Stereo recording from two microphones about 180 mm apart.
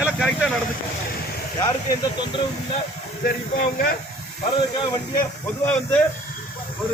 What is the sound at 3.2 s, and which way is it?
Speech, 55° left (ahead or behind).